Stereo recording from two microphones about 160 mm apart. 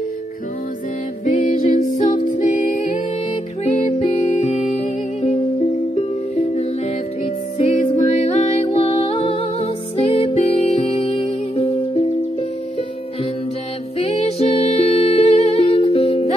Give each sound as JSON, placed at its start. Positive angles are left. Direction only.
{"t": 1.2, "sound": "music", "side_deg": 50}
{"t": 13.9, "sound": "music", "side_deg": 40}